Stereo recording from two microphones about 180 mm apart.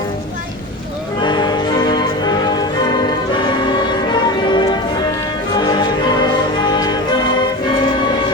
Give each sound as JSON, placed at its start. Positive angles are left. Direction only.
{"t": 1.2, "sound": "music", "side_deg": 25}
{"t": 6.6, "sound": "music", "side_deg": 25}